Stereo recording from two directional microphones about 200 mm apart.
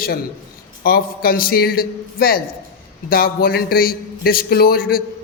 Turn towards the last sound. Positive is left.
turn(degrees=45)  # may be behind; listen again after turning